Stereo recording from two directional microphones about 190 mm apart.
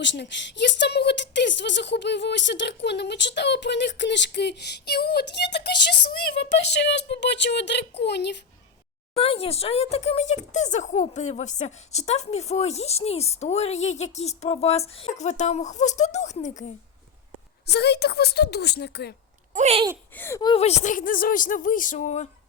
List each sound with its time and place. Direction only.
0.0 s a woman's voice: 70° left (ahead or behind)
9.1 s speech: 30° left (ahead or behind)
17.7 s a woman's voice: 60° left (ahead or behind)
19.5 s speech: 35° right (ahead or behind)
20.1 s speech: 10° left (ahead or behind)
20.4 s speech: 30° left (ahead or behind)